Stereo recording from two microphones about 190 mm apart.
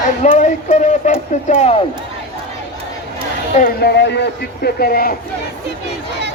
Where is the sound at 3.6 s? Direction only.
50° left (ahead or behind).